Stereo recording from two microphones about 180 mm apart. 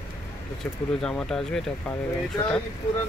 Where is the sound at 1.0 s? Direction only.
5° left (ahead or behind).